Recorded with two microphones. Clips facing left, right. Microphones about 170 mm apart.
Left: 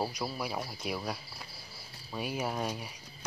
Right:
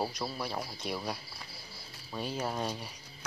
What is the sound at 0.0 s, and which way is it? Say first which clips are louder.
Speech: even; 5° left (ahead or behind).